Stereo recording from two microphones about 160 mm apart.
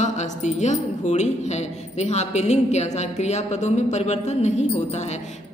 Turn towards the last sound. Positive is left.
turn(degrees=45)  # may be behind; listen again after turning